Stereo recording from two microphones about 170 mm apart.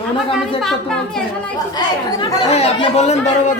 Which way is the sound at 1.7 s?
25° left (ahead or behind).